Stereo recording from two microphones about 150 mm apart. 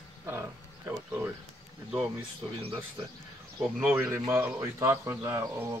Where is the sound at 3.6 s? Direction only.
5° right (ahead or behind).